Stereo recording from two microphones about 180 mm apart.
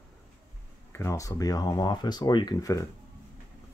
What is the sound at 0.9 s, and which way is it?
Speech, 15° left (ahead or behind).